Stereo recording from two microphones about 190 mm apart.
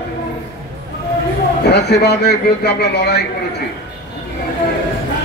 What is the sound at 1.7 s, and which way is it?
Speech, 60° left (ahead or behind).